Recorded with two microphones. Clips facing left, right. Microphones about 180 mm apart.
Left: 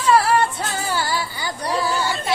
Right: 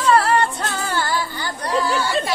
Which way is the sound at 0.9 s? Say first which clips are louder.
Right 1 dB; 10° left (ahead or behind).